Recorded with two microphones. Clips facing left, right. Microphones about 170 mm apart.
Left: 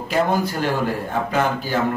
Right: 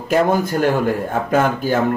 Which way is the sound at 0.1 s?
50° right (ahead or behind).